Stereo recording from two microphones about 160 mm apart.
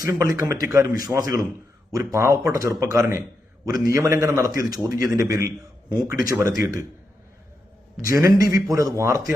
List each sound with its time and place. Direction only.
0.0 s a man's voice: 20° right (ahead or behind)
8.0 s a man's voice: 20° right (ahead or behind)